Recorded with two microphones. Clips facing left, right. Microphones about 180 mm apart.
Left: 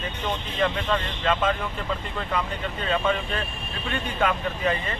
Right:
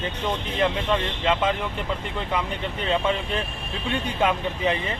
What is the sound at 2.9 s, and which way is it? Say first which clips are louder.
Speech: right 1 dB; 20° right (ahead or behind).